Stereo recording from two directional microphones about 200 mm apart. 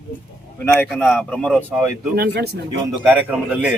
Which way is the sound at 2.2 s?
55° right (ahead or behind).